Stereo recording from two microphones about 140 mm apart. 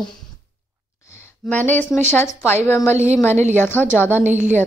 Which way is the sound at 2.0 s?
15° left (ahead or behind).